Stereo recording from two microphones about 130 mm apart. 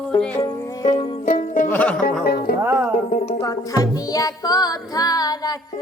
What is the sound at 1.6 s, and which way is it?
Music, 10° left (ahead or behind).